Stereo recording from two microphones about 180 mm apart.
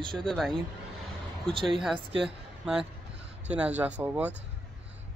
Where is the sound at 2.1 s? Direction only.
30° right (ahead or behind).